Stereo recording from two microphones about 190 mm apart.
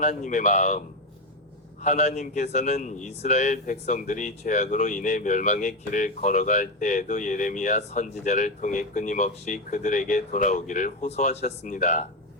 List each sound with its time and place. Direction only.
0.0 s a man's voice: 40° left (ahead or behind)
1.8 s a man's voice: 40° left (ahead or behind)